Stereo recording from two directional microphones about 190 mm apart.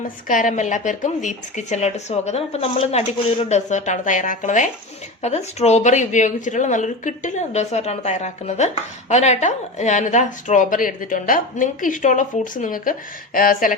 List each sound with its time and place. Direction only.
0.3 s a woman's voice: 45° left (ahead or behind)